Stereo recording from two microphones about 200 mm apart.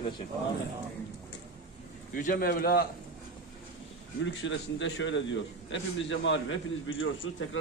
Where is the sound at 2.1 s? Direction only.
45° left (ahead or behind).